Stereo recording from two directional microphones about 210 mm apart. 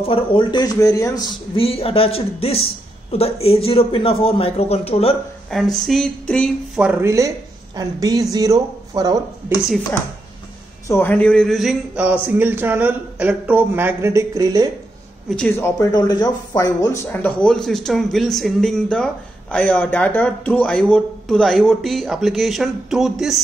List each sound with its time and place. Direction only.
0.0 s a man's voice: 25° left (ahead or behind)
5.5 s a man's voice: centre (ahead or behind); by 9.2 s 20° right (ahead or behind)
10.9 s a man's voice: 10° left (ahead or behind); by 14.7 s 15° right (ahead or behind)
15.2 s speech: 5° left (ahead or behind)